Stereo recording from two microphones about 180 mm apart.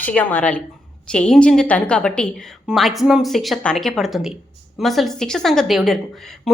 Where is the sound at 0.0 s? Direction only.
10° left (ahead or behind).